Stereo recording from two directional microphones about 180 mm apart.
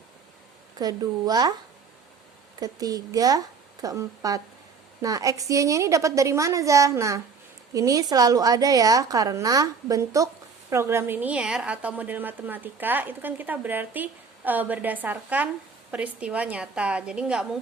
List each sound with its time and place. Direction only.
0.8 s a woman's voice: 20° right (ahead or behind)
2.6 s a woman's voice: 20° right (ahead or behind); by 17.6 s 5° right (ahead or behind)